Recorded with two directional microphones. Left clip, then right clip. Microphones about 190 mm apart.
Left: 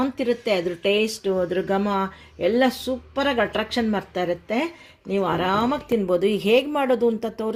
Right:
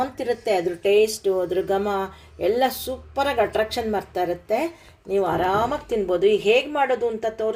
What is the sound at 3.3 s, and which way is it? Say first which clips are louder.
Speech: right 1 dB; 40° left (ahead or behind).